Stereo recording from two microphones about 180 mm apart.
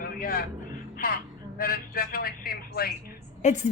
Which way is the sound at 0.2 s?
55° left (ahead or behind).